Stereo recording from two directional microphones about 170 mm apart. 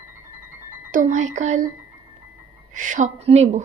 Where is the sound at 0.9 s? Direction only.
45° right (ahead or behind).